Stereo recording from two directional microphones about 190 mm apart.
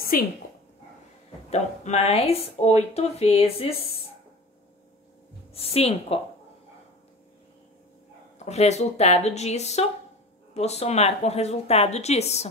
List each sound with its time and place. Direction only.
0.1 s speech: 45° left (ahead or behind)
1.5 s speech: 35° left (ahead or behind)
5.5 s speech: 30° left (ahead or behind)
8.5 s speech: 35° left (ahead or behind)